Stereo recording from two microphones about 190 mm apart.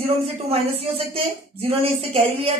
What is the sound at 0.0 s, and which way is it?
A woman's voice, 30° right (ahead or behind).